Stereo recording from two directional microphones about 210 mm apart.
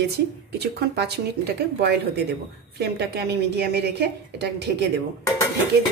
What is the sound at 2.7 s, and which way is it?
A woman's voice, 50° right (ahead or behind).